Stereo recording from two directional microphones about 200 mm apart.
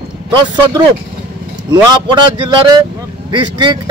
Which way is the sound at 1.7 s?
20° right (ahead or behind).